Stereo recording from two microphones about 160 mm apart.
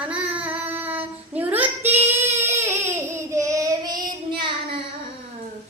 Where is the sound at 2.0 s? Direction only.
15° right (ahead or behind).